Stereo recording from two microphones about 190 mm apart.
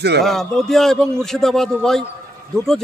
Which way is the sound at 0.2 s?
Centre (ahead or behind).